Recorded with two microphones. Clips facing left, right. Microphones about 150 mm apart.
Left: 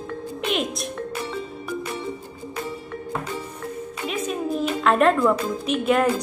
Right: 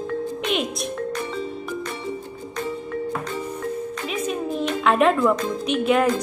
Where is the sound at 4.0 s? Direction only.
Centre (ahead or behind).